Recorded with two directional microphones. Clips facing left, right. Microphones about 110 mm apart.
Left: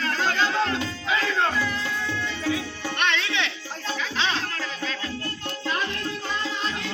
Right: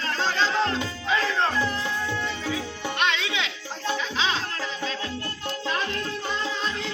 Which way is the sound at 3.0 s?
10° right (ahead or behind).